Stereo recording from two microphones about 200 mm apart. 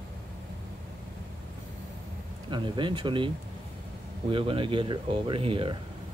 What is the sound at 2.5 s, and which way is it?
Speech, 25° right (ahead or behind).